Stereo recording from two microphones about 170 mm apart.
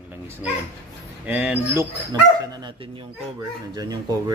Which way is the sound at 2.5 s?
25° right (ahead or behind).